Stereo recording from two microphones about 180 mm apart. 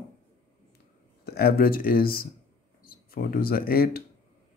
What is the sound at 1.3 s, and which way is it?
Speech, 60° left (ahead or behind).